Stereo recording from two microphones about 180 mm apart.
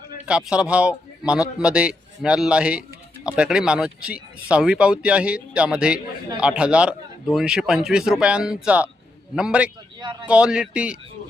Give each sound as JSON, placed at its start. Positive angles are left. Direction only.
{"t": 0.3, "sound": "a man's voice", "side_deg": -5}
{"t": 10.0, "sound": "a man's voice", "side_deg": -25}
{"t": 10.2, "sound": "speech", "side_deg": -5}